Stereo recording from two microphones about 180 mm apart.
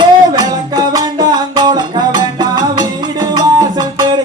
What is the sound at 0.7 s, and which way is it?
Music, 20° right (ahead or behind).